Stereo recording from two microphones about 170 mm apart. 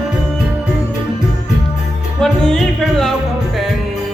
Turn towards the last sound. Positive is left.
turn(degrees=5)  # may be behind; listen again after turning